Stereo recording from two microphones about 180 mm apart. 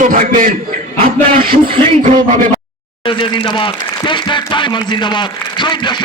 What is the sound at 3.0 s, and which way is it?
Speech, 30° left (ahead or behind).